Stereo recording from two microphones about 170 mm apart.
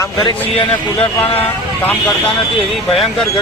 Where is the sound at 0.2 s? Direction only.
30° left (ahead or behind).